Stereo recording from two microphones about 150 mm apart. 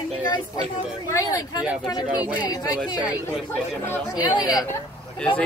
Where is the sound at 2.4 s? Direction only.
25° left (ahead or behind).